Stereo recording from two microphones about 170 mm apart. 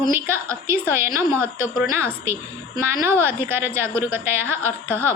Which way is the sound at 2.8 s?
15° right (ahead or behind).